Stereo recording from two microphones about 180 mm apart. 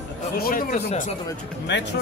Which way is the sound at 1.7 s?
75° left (ahead or behind).